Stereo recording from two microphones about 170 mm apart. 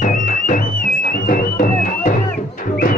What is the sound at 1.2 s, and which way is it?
Music, 60° left (ahead or behind).